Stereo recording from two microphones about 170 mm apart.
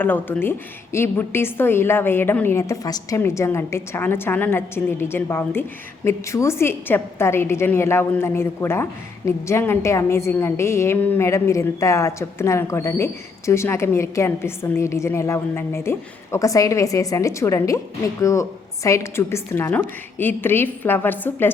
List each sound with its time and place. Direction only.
0.0 s a woman's voice: 10° left (ahead or behind)